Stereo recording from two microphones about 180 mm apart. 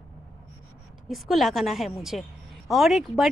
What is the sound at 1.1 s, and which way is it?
A woman's voice, centre (ahead or behind).